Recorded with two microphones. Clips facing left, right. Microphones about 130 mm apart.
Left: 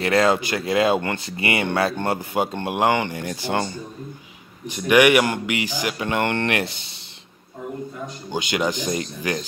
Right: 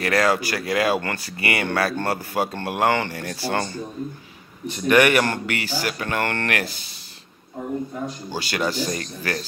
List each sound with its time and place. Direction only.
0.0 s speech: 25° left (ahead or behind)
8.3 s speech: 15° left (ahead or behind)